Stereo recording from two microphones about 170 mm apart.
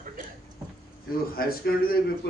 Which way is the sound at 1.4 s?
60° left (ahead or behind).